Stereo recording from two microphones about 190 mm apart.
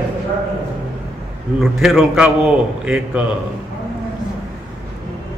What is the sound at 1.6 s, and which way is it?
A man's voice, centre (ahead or behind).